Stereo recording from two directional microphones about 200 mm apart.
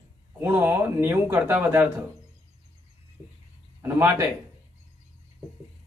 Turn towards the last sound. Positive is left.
turn(degrees=-10)  # may be behind; listen again after turning